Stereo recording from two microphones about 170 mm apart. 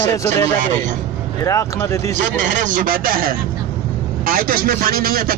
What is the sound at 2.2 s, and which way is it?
A man's voice, 45° right (ahead or behind).